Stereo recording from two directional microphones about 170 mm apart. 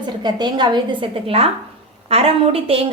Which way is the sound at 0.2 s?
25° right (ahead or behind).